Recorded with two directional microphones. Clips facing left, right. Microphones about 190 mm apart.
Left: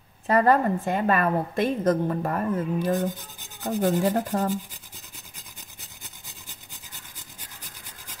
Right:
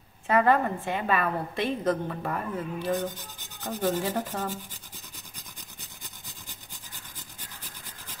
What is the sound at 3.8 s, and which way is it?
Speech, 45° left (ahead or behind).